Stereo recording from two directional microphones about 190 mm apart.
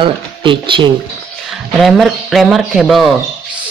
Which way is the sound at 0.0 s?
25° right (ahead or behind).